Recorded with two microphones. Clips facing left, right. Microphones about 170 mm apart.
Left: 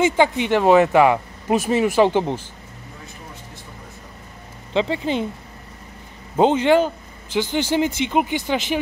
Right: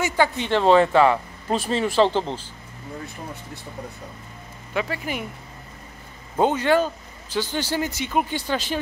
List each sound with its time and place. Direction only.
0.0 s speech: 20° left (ahead or behind)
4.7 s speech: 25° left (ahead or behind)
6.3 s speech: 20° left (ahead or behind)